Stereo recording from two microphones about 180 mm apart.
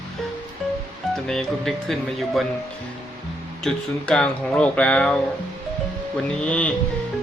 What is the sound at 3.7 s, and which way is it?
Speech, 5° left (ahead or behind).